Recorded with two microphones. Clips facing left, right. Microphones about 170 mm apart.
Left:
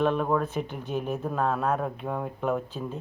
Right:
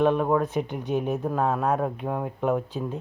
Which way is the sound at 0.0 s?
15° right (ahead or behind).